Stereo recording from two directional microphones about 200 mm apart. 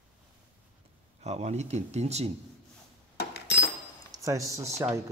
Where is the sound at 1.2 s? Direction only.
35° right (ahead or behind).